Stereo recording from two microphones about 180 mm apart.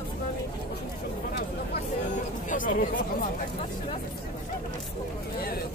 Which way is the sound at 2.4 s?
50° left (ahead or behind).